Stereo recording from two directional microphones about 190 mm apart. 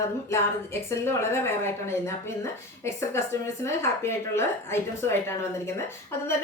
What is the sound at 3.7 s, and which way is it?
A woman's voice, 15° left (ahead or behind).